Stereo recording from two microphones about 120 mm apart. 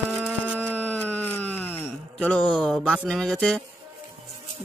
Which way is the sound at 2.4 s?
5° left (ahead or behind).